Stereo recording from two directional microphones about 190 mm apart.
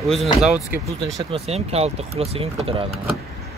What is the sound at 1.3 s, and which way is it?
Speech, 35° right (ahead or behind).